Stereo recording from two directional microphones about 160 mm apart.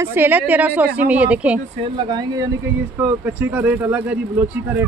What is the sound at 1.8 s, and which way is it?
Speech, 30° right (ahead or behind).